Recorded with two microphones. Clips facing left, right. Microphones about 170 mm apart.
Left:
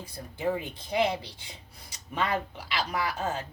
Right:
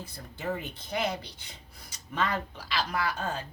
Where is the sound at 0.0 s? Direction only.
15° left (ahead or behind).